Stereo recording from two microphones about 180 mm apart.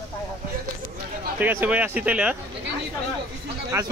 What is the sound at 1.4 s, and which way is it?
Speech, 10° right (ahead or behind).